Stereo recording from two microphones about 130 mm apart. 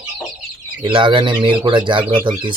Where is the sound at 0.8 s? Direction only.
40° right (ahead or behind).